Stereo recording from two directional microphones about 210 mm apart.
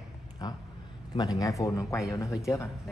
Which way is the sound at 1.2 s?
15° left (ahead or behind).